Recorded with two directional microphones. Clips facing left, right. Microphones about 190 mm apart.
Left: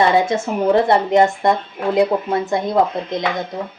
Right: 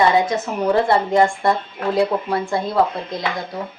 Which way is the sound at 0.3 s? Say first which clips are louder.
Left 3 dB; 25° left (ahead or behind).